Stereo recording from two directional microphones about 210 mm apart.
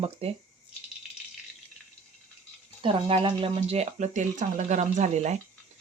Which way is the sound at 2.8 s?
25° right (ahead or behind).